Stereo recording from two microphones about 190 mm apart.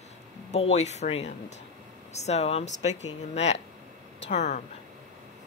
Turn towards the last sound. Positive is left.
turn(degrees=40)  # may be behind; listen again after turning